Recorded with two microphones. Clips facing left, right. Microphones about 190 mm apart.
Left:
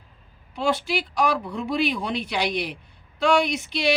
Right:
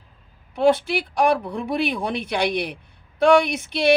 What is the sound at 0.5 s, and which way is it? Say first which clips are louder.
A woman's voice: right 6 dB; 55° right (ahead or behind).